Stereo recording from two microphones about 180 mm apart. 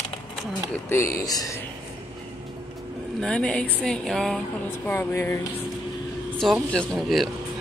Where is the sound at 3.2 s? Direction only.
5° left (ahead or behind).